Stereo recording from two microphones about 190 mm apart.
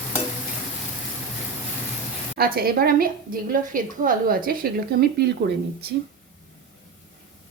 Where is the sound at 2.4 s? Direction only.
50° right (ahead or behind).